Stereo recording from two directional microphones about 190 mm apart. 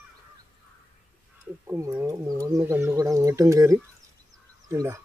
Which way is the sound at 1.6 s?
15° right (ahead or behind).